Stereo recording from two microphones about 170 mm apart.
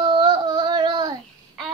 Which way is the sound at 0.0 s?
25° right (ahead or behind).